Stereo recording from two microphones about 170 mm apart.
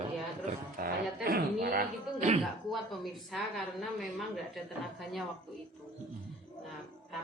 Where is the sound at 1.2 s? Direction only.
60° right (ahead or behind).